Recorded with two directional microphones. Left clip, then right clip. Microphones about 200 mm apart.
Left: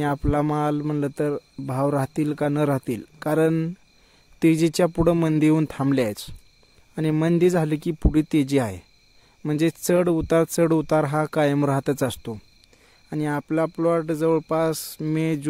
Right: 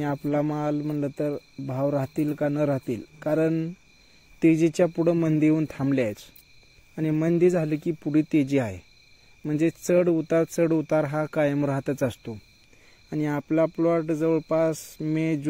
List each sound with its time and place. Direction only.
0.0 s speech: 25° left (ahead or behind)
13.1 s speech: 15° left (ahead or behind)